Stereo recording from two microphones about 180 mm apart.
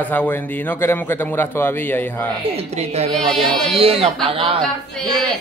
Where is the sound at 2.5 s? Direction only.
35° right (ahead or behind).